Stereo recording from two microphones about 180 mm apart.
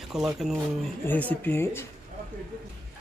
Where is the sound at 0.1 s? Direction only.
Centre (ahead or behind).